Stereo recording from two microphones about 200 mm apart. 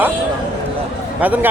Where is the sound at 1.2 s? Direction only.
10° right (ahead or behind).